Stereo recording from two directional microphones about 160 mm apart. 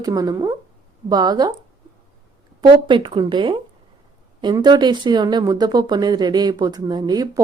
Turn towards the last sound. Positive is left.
turn(degrees=-25)  # may be behind; listen again after turning